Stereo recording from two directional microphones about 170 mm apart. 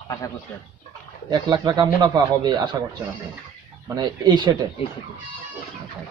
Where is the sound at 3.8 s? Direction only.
25° right (ahead or behind).